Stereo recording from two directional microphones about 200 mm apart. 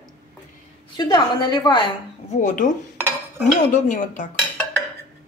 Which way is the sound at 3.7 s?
40° left (ahead or behind).